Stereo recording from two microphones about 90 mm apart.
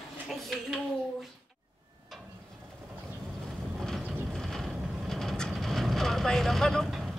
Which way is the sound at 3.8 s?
5° left (ahead or behind).